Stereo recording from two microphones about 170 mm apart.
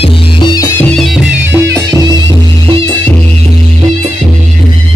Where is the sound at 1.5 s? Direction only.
20° right (ahead or behind).